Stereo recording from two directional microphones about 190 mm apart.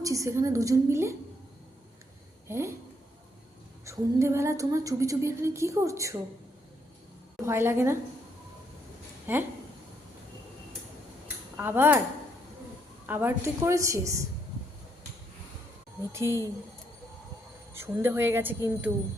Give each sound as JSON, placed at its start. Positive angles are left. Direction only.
{"t": 0.0, "sound": "a woman's voice", "side_deg": -15}
{"t": 2.5, "sound": "a woman's voice", "side_deg": -15}
{"t": 3.8, "sound": "a woman's voice", "side_deg": -15}
{"t": 7.4, "sound": "a woman's voice", "side_deg": -15}
{"t": 9.2, "sound": "speech", "side_deg": -10}
{"t": 11.5, "sound": "a woman's voice", "side_deg": -10}
{"t": 13.1, "sound": "a woman's voice", "side_deg": -10}
{"t": 16.1, "sound": "a woman's voice", "side_deg": -15}
{"t": 17.7, "sound": "a woman's voice", "side_deg": -10}